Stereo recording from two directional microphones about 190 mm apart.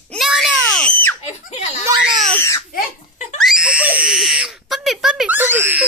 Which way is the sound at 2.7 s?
40° left (ahead or behind).